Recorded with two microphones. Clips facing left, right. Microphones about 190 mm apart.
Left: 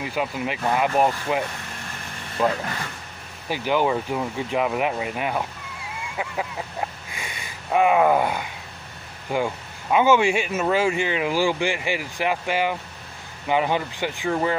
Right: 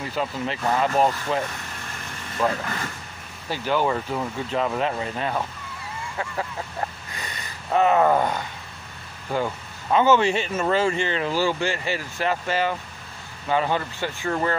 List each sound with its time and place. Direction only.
0.0 s speech: 10° left (ahead or behind)
7.1 s speech: 10° left (ahead or behind)